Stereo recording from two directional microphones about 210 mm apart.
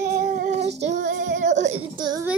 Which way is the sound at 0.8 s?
35° right (ahead or behind).